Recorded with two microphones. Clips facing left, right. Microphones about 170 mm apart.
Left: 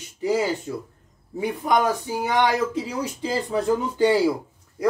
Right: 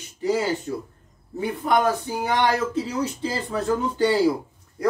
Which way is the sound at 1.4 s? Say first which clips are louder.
Even; 15° left (ahead or behind).